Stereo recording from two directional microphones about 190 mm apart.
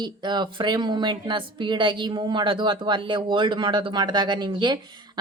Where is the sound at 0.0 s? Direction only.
25° right (ahead or behind).